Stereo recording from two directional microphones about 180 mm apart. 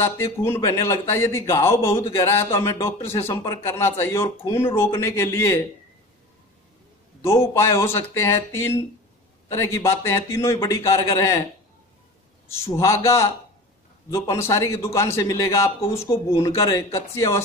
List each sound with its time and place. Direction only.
0.0 s a man's voice: 15° left (ahead or behind)
7.2 s a man's voice: 15° left (ahead or behind)
12.4 s a man's voice: 15° left (ahead or behind)